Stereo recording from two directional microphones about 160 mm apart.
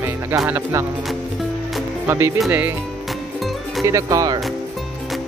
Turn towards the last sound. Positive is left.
turn(degrees=-20)  # may be behind; listen again after turning